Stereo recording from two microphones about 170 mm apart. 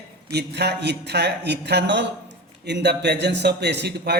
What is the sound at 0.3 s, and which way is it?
A man's voice, 75° right (ahead or behind).